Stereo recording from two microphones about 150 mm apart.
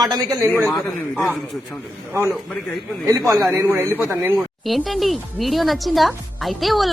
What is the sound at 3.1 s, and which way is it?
A man's voice, 20° right (ahead or behind).